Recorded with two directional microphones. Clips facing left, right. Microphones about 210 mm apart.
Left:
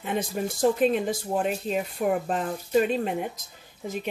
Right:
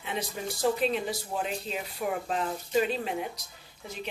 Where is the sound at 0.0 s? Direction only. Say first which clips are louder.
Left 6 dB; 50° left (ahead or behind).